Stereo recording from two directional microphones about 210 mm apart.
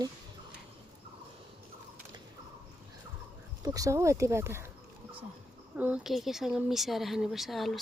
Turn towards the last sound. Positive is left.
turn(degrees=0)  # may be behind; listen again after turning